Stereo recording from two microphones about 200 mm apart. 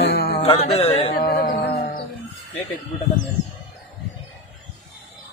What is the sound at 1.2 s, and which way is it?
Music, 50° left (ahead or behind).